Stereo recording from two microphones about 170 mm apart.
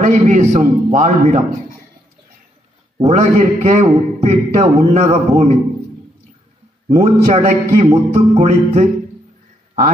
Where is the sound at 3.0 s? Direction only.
45° right (ahead or behind).